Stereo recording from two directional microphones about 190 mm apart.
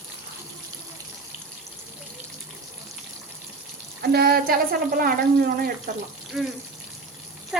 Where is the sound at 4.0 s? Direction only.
55° right (ahead or behind).